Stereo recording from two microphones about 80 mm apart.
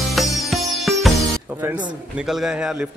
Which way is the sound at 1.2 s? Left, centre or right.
Right.